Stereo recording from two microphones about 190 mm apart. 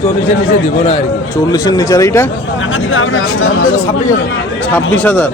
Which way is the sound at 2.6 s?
90° left.